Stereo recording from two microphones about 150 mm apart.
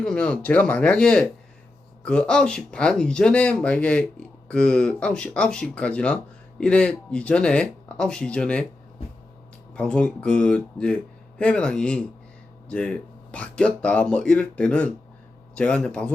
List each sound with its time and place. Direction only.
0.0 s speech: 5° left (ahead or behind)
9.7 s speech: 5° left (ahead or behind)